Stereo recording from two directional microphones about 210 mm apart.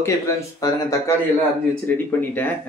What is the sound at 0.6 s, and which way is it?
Speech, 15° left (ahead or behind).